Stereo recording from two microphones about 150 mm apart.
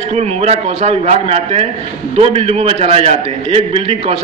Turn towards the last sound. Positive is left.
turn(degrees=-40)  # may be behind; listen again after turning